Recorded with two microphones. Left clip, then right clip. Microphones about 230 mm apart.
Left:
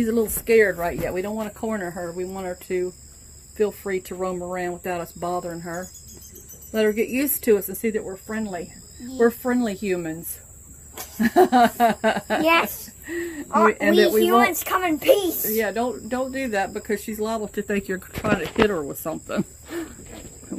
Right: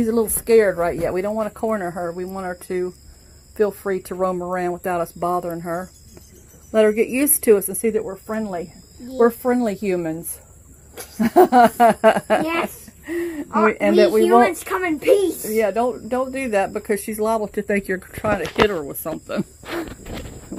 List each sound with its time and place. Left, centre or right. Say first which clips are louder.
0.0 s speech: right 3 dB; centre
11.1 s speech: right 4 dB; right
14.5 s a woman's voice: even; left
15.5 s speech: right 5 dB; right
18.2 s speech: right 3 dB; centre